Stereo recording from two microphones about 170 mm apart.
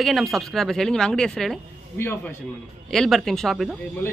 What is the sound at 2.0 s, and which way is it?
Speech, 15° left (ahead or behind).